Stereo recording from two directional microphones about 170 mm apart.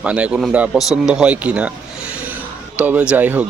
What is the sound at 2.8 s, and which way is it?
Speech, 5° right (ahead or behind).